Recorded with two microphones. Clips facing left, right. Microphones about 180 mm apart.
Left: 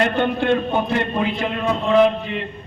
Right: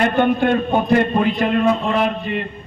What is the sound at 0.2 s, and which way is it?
A man's voice, 50° right (ahead or behind).